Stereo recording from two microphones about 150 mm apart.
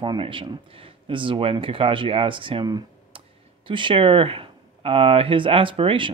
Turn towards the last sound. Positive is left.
turn(degrees=-35)  # may be behind; listen again after turning